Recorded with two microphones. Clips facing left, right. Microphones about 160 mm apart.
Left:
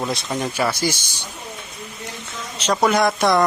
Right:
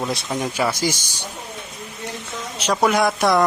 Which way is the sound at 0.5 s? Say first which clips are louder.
Even; 15° right (ahead or behind).